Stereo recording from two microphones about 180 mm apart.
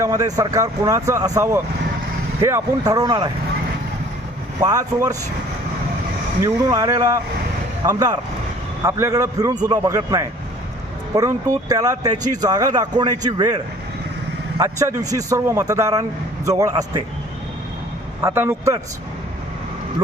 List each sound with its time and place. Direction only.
0.0 s speech: 20° right (ahead or behind)
4.6 s speech: 20° right (ahead or behind)
6.4 s speech: 20° right (ahead or behind)
14.6 s speech: 20° right (ahead or behind)
18.2 s a man's voice: 15° right (ahead or behind)